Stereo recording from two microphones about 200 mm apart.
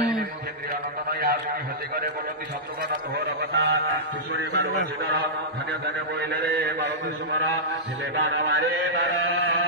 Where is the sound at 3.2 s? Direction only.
55° right (ahead or behind).